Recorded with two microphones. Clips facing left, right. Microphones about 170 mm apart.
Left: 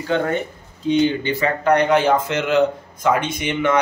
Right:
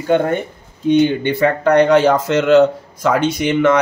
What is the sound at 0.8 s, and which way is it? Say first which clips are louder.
A man's voice: right 4 dB; 55° right (ahead or behind).